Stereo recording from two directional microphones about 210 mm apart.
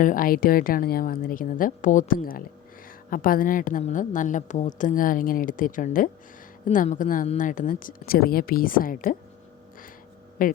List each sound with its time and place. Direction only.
0.0 s a woman's voice: 40° left (ahead or behind)
10.4 s a woman's voice: 40° left (ahead or behind)